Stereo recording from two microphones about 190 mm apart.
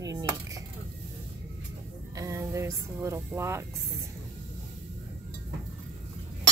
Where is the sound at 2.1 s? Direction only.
15° right (ahead or behind).